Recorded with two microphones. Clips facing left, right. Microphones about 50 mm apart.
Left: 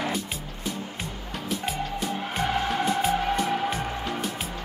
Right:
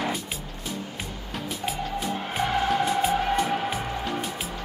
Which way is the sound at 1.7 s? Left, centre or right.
Centre.